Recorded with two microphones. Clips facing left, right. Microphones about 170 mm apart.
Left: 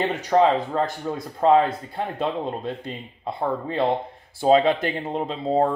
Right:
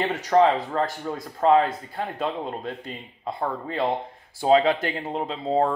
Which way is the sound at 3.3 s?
25° left (ahead or behind).